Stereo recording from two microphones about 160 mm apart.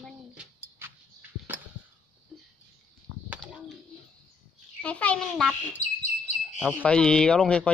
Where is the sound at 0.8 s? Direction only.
15° right (ahead or behind).